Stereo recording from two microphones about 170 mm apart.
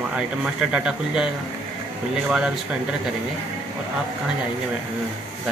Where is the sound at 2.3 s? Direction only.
5° right (ahead or behind).